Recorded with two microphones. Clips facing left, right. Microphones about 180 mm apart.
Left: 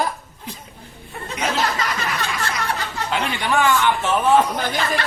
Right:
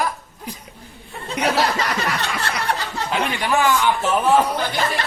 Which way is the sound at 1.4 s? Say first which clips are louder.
Right 4 dB; 65° right (ahead or behind).